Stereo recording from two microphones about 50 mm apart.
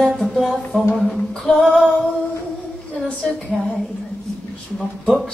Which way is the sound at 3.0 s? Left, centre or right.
Centre.